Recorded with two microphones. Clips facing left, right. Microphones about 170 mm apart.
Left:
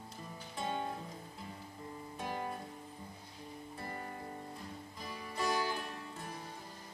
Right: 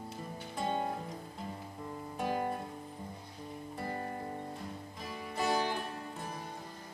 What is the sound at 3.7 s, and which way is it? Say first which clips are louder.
Music: right 6 dB; 45° right (ahead or behind).